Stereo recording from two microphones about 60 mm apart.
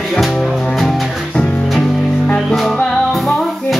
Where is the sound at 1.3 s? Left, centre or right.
Left.